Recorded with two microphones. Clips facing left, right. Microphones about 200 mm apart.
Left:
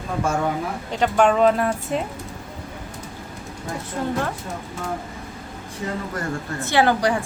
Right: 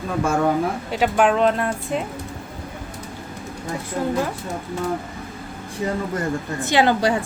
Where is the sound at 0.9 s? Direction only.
5° right (ahead or behind).